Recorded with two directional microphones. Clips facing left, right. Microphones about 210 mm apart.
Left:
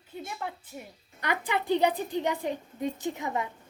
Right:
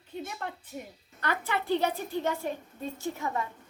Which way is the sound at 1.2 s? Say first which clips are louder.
Left 1 dB; 15° left (ahead or behind).